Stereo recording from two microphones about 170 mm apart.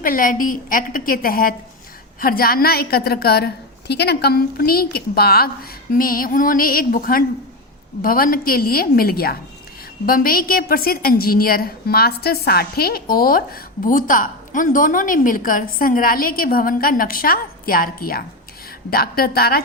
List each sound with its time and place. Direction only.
0.0 s a woman's voice: 55° left (ahead or behind)